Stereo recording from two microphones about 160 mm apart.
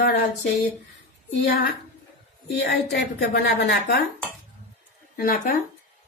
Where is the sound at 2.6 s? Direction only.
90° left.